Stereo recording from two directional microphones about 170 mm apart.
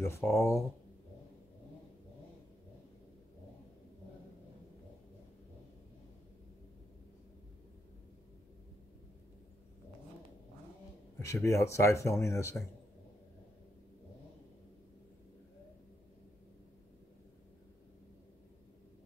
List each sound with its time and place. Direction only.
0.0 s speech: 15° left (ahead or behind)
11.1 s speech: 15° left (ahead or behind)